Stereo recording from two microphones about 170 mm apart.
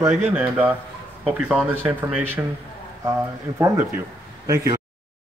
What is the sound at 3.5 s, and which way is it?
Speech, 15° right (ahead or behind).